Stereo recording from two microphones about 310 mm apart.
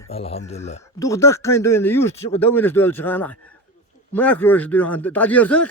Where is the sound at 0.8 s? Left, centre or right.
Centre.